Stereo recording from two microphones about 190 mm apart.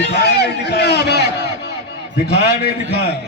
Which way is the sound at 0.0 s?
60° left (ahead or behind).